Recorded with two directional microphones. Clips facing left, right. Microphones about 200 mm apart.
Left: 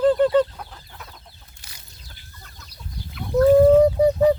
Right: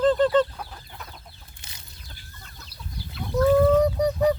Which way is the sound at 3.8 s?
25° left (ahead or behind).